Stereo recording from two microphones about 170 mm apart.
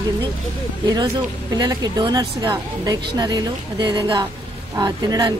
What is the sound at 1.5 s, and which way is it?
Speech, 25° right (ahead or behind).